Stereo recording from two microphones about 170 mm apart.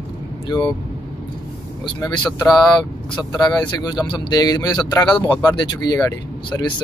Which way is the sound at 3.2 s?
25° left (ahead or behind).